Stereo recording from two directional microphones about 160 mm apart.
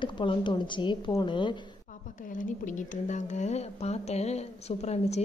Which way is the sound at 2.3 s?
55° left (ahead or behind).